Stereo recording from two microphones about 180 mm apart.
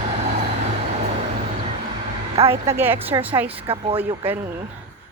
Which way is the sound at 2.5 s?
15° right (ahead or behind).